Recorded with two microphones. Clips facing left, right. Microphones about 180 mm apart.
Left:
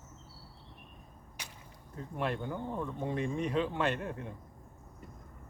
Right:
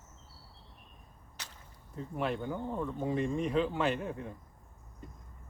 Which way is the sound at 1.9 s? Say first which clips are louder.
Right 1 dB; centre (ahead or behind).